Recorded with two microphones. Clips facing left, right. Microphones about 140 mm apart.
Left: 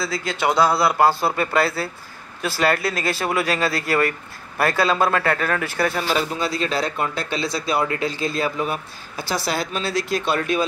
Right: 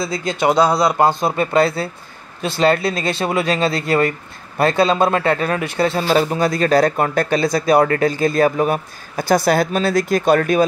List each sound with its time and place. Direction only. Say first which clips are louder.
0.0 s speech: right 4 dB; 20° right (ahead or behind)
6.3 s speech: right 8 dB; 50° right (ahead or behind)